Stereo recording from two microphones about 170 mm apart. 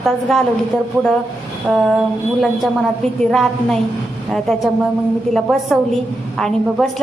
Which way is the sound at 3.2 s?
5° left (ahead or behind).